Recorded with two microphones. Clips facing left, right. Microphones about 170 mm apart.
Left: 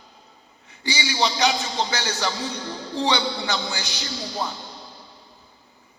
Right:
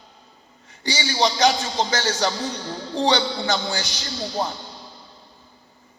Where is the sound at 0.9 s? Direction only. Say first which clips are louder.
Right 2 dB; 45° right (ahead or behind).